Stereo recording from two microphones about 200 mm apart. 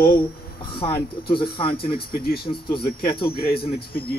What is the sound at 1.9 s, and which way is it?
Speech, 50° left (ahead or behind).